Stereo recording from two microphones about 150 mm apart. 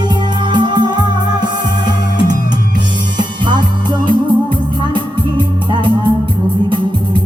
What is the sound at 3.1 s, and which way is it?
Music, 30° right (ahead or behind).